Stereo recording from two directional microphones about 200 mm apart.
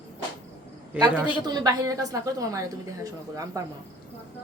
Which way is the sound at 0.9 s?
5° right (ahead or behind).